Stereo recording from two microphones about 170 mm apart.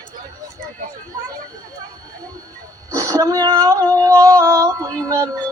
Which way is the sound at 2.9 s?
20° right (ahead or behind).